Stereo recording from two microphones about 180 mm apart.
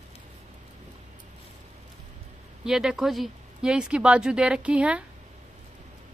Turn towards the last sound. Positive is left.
turn(degrees=-5)  # may be behind; listen again after turning